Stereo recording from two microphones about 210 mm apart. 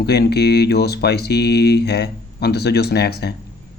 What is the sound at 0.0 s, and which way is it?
Speech, 50° left (ahead or behind).